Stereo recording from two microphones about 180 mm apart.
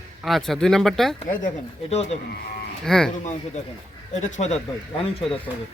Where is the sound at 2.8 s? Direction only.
5° left (ahead or behind).